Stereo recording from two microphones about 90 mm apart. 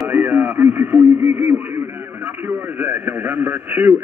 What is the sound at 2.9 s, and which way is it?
Speech, 20° right (ahead or behind).